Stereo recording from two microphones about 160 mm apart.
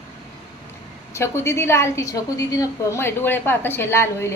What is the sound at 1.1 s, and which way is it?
A woman's voice, 15° left (ahead or behind).